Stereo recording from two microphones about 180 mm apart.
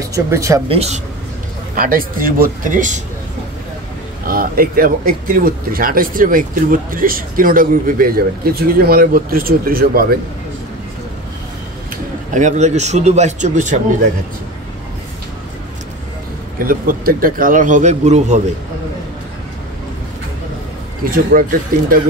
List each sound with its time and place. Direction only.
0.1 s speech: 15° right (ahead or behind)
0.7 s speech: 35° right (ahead or behind)
1.8 s speech: 50° right (ahead or behind)
4.3 s speech: 55° right (ahead or behind)
11.9 s speech: 40° right (ahead or behind)
16.5 s speech: 50° right (ahead or behind)
21.0 s speech: 50° right (ahead or behind)